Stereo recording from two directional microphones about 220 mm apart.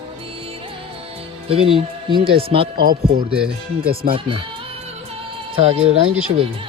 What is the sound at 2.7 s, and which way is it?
Speech, 40° right (ahead or behind).